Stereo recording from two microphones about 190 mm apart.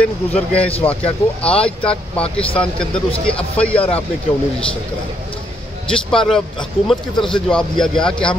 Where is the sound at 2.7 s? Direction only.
5° left (ahead or behind).